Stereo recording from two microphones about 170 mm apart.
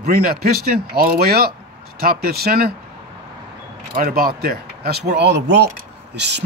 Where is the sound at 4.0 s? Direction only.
60° right (ahead or behind).